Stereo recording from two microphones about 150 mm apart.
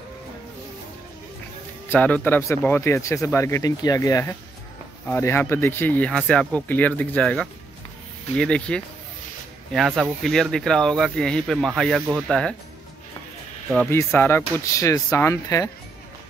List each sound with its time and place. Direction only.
1.9 s speech: 10° left (ahead or behind)
13.8 s speech: 15° left (ahead or behind)